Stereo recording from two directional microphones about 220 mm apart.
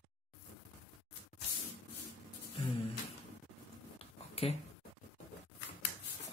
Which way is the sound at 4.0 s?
25° left (ahead or behind).